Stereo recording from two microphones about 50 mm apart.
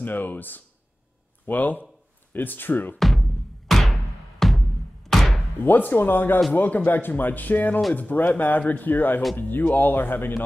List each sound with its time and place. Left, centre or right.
0.0 s speech: left
3.0 s music: centre
5.6 s speech: left